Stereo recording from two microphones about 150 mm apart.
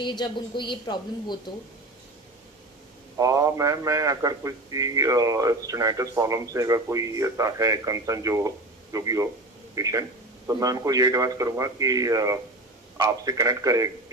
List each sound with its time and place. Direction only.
0.0 s a woman's voice: 30° left (ahead or behind)
3.2 s a man's voice: 20° right (ahead or behind)
9.8 s a sound: 20° right (ahead or behind)
10.6 s a man's voice: 25° right (ahead or behind)